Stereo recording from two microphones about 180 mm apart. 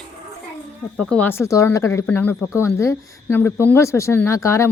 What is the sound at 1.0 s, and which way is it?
Speech, 5° left (ahead or behind).